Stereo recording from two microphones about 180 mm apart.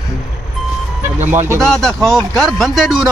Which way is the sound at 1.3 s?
15° right (ahead or behind).